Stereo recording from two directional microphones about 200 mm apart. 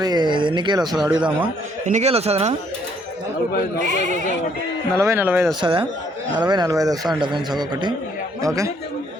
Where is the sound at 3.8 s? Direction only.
40° right (ahead or behind).